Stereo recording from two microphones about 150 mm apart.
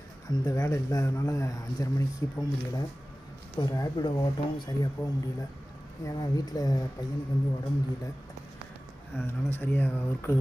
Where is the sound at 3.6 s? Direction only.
25° left (ahead or behind).